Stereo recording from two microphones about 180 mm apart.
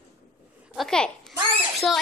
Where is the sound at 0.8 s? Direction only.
5° left (ahead or behind).